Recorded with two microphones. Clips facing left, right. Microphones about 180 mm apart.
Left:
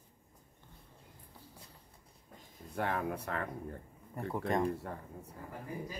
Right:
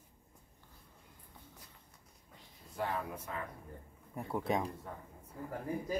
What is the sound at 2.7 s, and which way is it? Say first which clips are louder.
Speech: left 3 dB; 55° left (ahead or behind).